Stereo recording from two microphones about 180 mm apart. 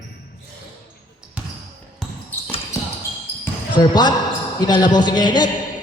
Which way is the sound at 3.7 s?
25° left (ahead or behind).